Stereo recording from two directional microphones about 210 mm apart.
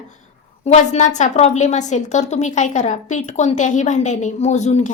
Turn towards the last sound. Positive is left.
turn(degrees=35)  # may be behind; listen again after turning